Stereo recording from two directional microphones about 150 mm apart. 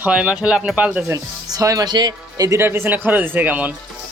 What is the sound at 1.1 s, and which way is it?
Speech, 20° right (ahead or behind).